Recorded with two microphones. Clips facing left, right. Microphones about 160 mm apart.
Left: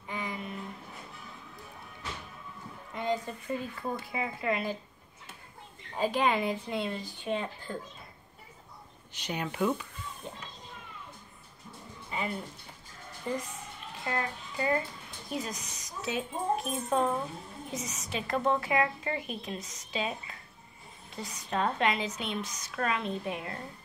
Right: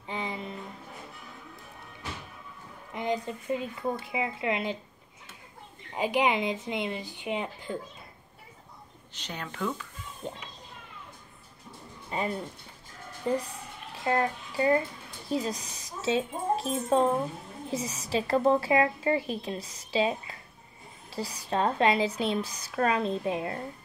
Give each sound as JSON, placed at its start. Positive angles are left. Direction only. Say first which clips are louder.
{"t": 0.1, "sound": "a sound", "louder": "right 2 dB", "side_deg": -25}
{"t": 2.9, "sound": "speech", "louder": "right 1 dB", "side_deg": -20}
{"t": 5.9, "sound": "speech", "louder": "right 1 dB", "side_deg": -15}
{"t": 9.1, "sound": "speech", "louder": "left 4 dB", "side_deg": 10}
{"t": 12.1, "sound": "speech", "louder": "right 4 dB", "side_deg": -35}
{"t": 14.0, "sound": "child singing", "louder": "right 7 dB", "side_deg": -30}
{"t": 15.2, "sound": "speech", "louder": "right 6 dB", "side_deg": -30}